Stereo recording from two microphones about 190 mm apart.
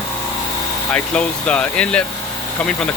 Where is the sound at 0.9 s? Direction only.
5° left (ahead or behind).